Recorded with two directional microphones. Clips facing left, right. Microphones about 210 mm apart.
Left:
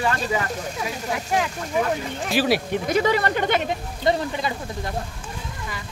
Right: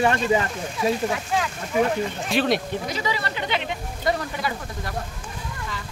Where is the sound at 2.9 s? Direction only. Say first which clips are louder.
Left 8 dB; 55° left (ahead or behind).